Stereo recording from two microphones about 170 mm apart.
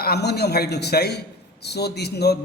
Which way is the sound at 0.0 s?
70° left (ahead or behind).